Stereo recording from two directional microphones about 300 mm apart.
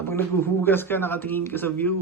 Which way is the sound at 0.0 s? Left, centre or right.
Centre.